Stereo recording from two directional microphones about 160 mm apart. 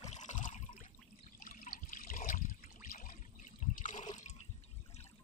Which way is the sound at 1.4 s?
55° left (ahead or behind).